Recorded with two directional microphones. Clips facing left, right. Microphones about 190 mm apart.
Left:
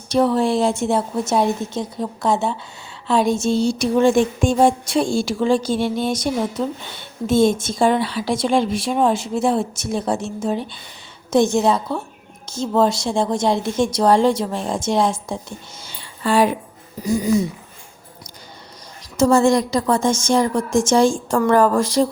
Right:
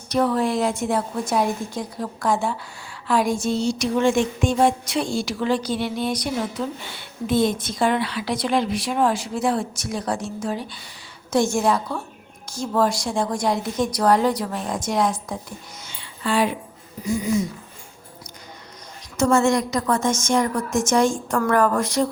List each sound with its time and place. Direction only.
0.1 s a woman's voice: 25° left (ahead or behind)
6.1 s a woman's voice: 40° left (ahead or behind)
7.3 s a woman's voice: 25° left (ahead or behind)
19.1 s a woman's voice: 35° left (ahead or behind)